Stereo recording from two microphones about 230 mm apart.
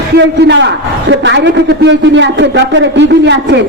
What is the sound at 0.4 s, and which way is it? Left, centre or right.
A man's voice, right.